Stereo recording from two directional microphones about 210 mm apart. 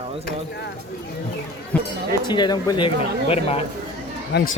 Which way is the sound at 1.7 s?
5° left (ahead or behind).